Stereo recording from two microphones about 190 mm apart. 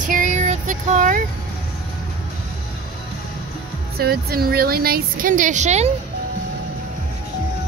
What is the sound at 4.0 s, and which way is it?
A woman's voice, 55° right (ahead or behind).